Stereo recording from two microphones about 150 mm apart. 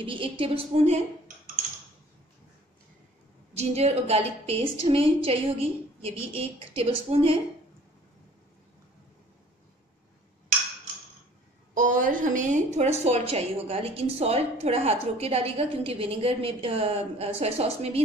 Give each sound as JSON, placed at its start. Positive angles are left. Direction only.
{"t": 0.0, "sound": "a woman's voice", "side_deg": -35}
{"t": 3.5, "sound": "a woman's voice", "side_deg": -45}
{"t": 11.7, "sound": "a woman's voice", "side_deg": -60}